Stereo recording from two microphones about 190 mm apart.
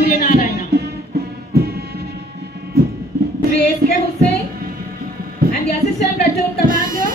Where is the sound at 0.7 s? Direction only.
55° right (ahead or behind).